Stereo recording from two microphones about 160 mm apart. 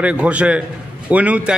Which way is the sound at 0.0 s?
5° right (ahead or behind).